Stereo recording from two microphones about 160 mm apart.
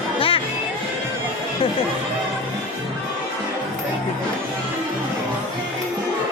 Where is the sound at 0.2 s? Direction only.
35° left (ahead or behind).